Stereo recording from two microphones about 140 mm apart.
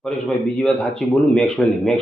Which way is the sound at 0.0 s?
5° left (ahead or behind).